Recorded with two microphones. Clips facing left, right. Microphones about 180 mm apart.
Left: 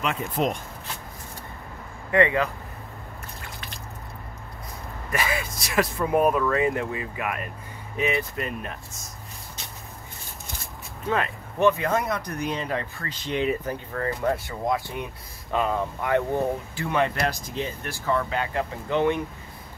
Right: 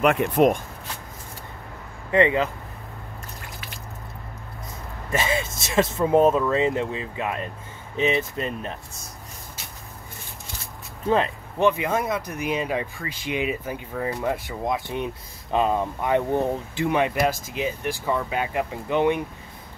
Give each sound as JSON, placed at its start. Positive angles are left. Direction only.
{"t": 0.0, "sound": "speech", "side_deg": -60}
{"t": 2.0, "sound": "speech", "side_deg": -20}
{"t": 5.1, "sound": "speech", "side_deg": -25}
{"t": 11.1, "sound": "speech", "side_deg": -25}